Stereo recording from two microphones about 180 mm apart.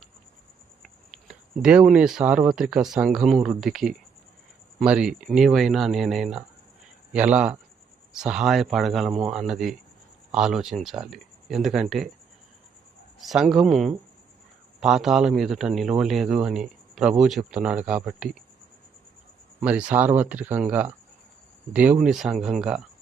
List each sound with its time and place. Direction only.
0.8 s a man's voice: 5° right (ahead or behind)
13.1 s a man's voice: centre (ahead or behind)
19.5 s a man's voice: 10° right (ahead or behind)